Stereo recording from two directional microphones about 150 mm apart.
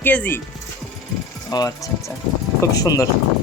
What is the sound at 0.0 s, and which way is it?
Speech, 10° left (ahead or behind).